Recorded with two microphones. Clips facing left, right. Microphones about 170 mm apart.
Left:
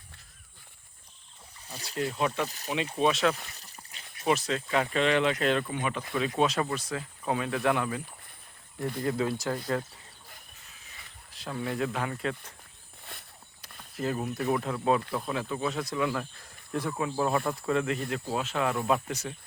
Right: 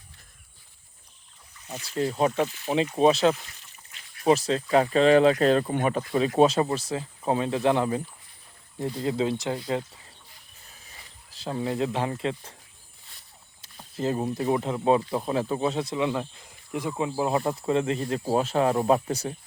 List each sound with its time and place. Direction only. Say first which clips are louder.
2.0 s speech: right 5 dB; 35° right (ahead or behind)
9.0 s speech: right 3 dB; 20° right (ahead or behind)
11.3 s speech: right 4 dB; 30° right (ahead or behind)
13.9 s speech: right 4 dB; 25° right (ahead or behind)